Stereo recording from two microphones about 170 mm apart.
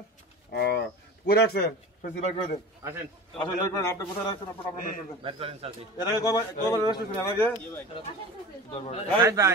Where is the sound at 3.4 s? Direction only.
20° left (ahead or behind).